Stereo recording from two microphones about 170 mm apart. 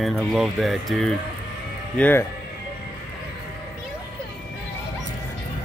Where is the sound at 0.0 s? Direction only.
Centre (ahead or behind).